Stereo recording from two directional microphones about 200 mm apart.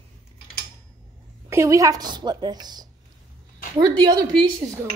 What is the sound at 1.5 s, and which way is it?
A woman's voice, 15° right (ahead or behind).